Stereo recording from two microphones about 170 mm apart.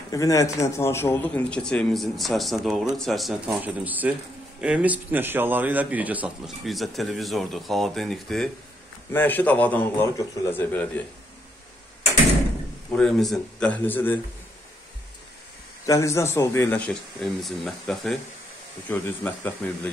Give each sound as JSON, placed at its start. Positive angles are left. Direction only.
{"t": 0.1, "sound": "a man's voice", "side_deg": 20}
{"t": 12.9, "sound": "speech", "side_deg": 0}
{"t": 15.8, "sound": "speech", "side_deg": 20}